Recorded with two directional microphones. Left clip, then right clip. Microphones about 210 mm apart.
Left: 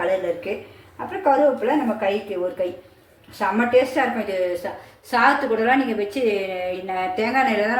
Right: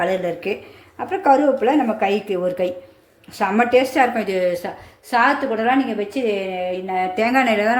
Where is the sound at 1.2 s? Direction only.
55° right (ahead or behind).